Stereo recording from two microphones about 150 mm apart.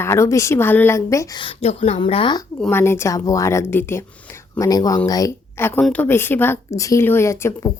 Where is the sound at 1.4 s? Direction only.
40° left (ahead or behind).